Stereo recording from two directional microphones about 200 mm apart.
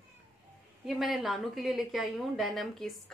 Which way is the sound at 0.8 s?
Centre (ahead or behind).